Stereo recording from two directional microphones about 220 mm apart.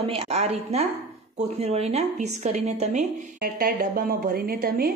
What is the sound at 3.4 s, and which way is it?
A woman's voice, 40° right (ahead or behind).